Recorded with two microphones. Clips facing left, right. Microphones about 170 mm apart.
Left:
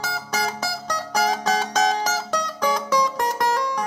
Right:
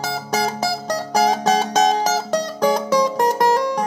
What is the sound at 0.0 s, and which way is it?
Music, 25° right (ahead or behind).